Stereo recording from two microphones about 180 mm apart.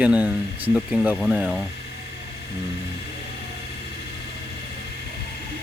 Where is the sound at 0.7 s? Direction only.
5° right (ahead or behind).